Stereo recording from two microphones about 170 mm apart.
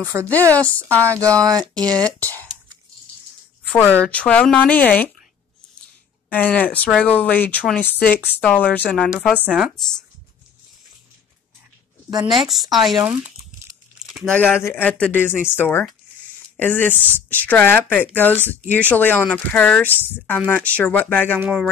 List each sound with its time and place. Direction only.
0.0 s speech: 15° right (ahead or behind)
0.3 s speech: 10° left (ahead or behind)
1.0 s speech: 15° right (ahead or behind)
2.1 s a sound: 10° left (ahead or behind)
3.6 s speech: 10° left (ahead or behind)
6.3 s speech: 10° left (ahead or behind)
12.1 s speech: 25° right (ahead or behind)
12.7 s speech: centre (ahead or behind)
13.0 s crumpling: 10° right (ahead or behind)
14.1 s speech: 10° left (ahead or behind)
21.4 s speech: 5° right (ahead or behind)